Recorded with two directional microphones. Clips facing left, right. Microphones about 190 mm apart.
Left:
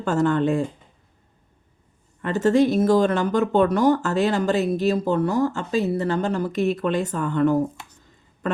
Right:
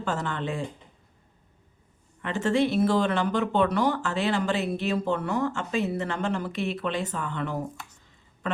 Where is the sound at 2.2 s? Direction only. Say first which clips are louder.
Left 6 dB; 40° left (ahead or behind).